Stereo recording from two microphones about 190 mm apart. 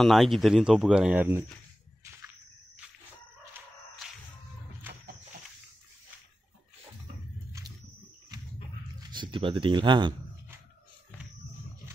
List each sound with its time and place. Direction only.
0.0 s speech: centre (ahead or behind)
8.3 s a sound: 20° right (ahead or behind)
9.0 s speech: 25° right (ahead or behind)